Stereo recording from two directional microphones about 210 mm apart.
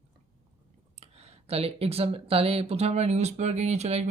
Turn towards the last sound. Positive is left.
turn(degrees=-30)  # may be behind; listen again after turning